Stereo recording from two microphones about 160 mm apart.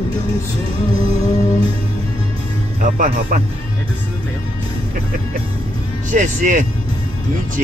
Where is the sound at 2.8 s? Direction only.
55° right (ahead or behind).